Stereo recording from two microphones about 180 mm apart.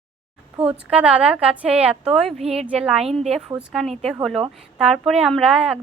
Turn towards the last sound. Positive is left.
turn(degrees=-5)  # may be behind; listen again after turning